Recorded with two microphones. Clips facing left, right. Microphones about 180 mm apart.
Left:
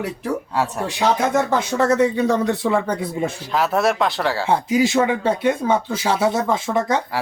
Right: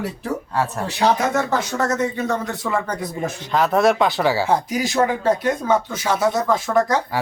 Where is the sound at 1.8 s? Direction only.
30° left (ahead or behind).